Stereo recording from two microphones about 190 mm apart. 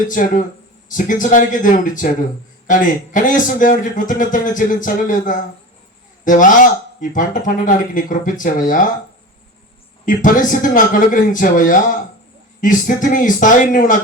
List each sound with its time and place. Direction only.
0.1 s a man's voice: 45° left (ahead or behind)
10.1 s a man's voice: 45° left (ahead or behind)